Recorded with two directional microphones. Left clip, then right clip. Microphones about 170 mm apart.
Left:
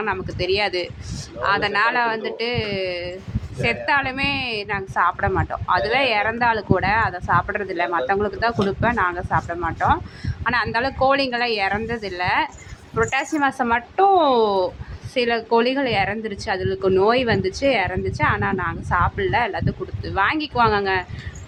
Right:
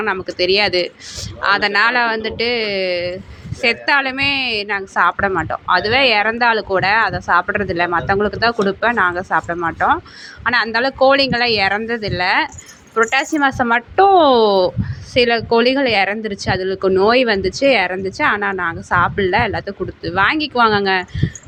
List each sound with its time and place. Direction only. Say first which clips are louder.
0.0 s a woman's voice: right 6 dB; 20° right (ahead or behind)